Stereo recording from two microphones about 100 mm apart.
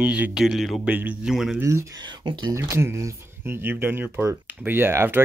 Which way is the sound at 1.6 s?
30° right (ahead or behind).